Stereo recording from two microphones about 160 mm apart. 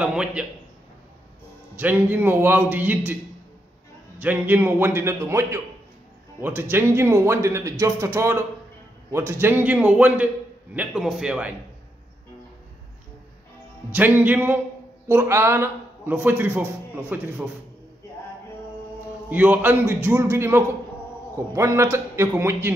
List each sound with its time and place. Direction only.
0.0 s a man's voice: 5° right (ahead or behind)
1.8 s a man's voice: 10° right (ahead or behind)
4.2 s a man's voice: 10° right (ahead or behind)
13.9 s a man's voice: 10° right (ahead or behind)
19.2 s a man's voice: 10° right (ahead or behind)